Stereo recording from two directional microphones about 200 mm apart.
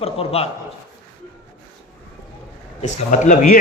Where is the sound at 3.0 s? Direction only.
40° left (ahead or behind).